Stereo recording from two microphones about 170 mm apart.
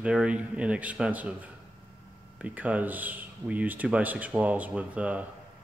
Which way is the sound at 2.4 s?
10° right (ahead or behind).